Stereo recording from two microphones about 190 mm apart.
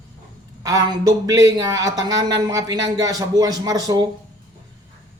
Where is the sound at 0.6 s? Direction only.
15° right (ahead or behind).